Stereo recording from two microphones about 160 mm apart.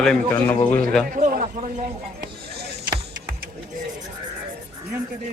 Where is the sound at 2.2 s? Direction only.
90° right.